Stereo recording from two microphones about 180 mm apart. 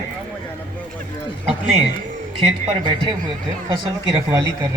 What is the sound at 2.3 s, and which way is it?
Speech, 25° right (ahead or behind).